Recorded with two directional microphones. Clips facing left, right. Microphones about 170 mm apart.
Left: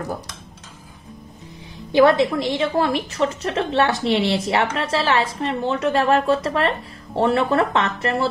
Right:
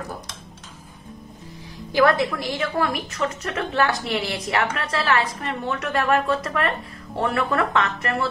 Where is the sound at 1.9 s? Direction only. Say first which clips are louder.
Left 4 dB; 25° left (ahead or behind).